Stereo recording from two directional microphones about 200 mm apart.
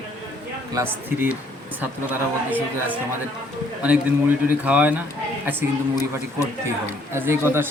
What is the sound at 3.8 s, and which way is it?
A man's voice, 5° right (ahead or behind).